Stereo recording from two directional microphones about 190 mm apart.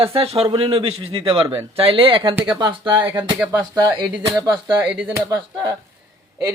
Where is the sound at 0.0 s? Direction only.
30° right (ahead or behind).